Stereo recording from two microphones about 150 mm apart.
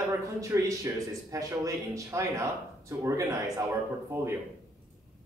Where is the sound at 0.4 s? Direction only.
20° right (ahead or behind).